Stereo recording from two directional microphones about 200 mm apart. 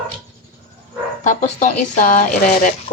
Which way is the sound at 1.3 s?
40° left (ahead or behind).